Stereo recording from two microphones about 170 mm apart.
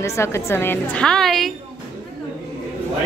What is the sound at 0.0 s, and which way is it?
A woman's voice, 15° left (ahead or behind).